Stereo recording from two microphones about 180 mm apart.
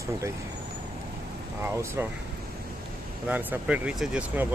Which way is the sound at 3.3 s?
10° right (ahead or behind).